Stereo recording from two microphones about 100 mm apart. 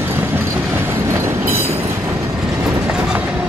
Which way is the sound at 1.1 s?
25° right (ahead or behind).